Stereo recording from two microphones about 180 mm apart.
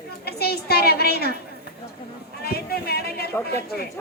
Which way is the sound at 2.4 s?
60° left (ahead or behind).